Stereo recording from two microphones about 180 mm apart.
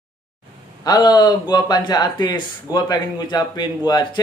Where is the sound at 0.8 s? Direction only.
20° left (ahead or behind).